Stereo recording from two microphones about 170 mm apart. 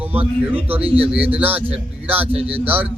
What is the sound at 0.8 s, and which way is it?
Speech, 35° right (ahead or behind).